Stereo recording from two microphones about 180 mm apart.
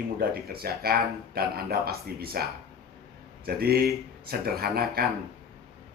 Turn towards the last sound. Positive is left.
turn(degrees=-60)  # may be behind; listen again after turning